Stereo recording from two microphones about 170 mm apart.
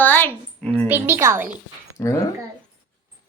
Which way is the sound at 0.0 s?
10° left (ahead or behind).